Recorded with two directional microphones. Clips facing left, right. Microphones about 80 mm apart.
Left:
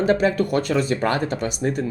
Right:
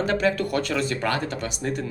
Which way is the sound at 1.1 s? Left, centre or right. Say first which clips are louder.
Left 5 dB; centre.